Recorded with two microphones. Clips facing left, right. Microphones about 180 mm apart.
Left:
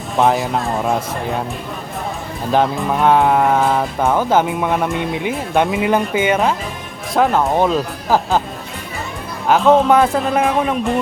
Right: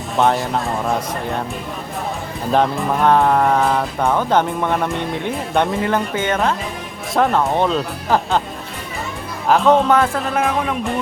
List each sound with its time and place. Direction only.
0.2 s speech: centre (ahead or behind)
2.5 s speech: centre (ahead or behind)
9.5 s speech: centre (ahead or behind)
9.9 s a man's voice: 15° left (ahead or behind)